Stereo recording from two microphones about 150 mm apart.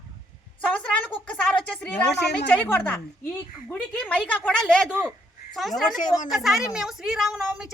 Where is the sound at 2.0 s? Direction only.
90° left.